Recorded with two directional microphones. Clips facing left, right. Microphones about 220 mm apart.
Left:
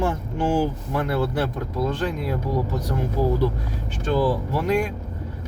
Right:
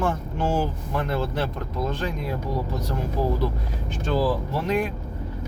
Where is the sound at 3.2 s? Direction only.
15° right (ahead or behind).